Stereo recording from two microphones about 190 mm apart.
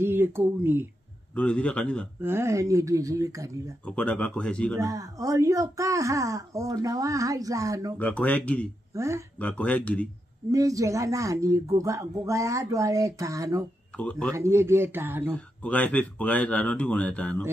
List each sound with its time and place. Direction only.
0.0 s speech: 10° right (ahead or behind)
1.3 s speech: 5° left (ahead or behind)
2.2 s speech: 15° right (ahead or behind)
3.8 s speech: 5° left (ahead or behind)
4.7 s speech: 20° right (ahead or behind)
8.0 s speech: 10° left (ahead or behind)
8.9 s speech: 15° right (ahead or behind)
9.4 s speech: 5° left (ahead or behind)
10.5 s speech: 15° right (ahead or behind)
15.3 s speech: 10° left (ahead or behind)